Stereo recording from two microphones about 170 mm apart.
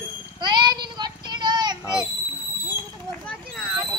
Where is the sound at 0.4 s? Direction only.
25° right (ahead or behind).